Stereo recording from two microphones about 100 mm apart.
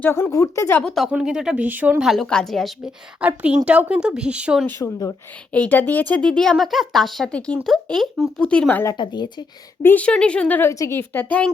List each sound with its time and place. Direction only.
0.0 s speech: 25° left (ahead or behind)
0.7 s speech: 15° left (ahead or behind)
1.1 s a woman's voice: 10° right (ahead or behind)
2.0 s a woman's voice: centre (ahead or behind)
3.2 s a woman's voice: 15° right (ahead or behind)
4.8 s speech: 30° left (ahead or behind)
5.5 s speech: 15° left (ahead or behind)
9.0 s a woman's voice: 45° left (ahead or behind)
9.8 s speech: 15° left (ahead or behind)
10.7 s speech: 25° left (ahead or behind)